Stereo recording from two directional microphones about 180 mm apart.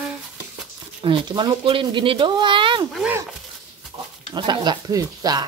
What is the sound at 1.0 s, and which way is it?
Speech, 25° right (ahead or behind).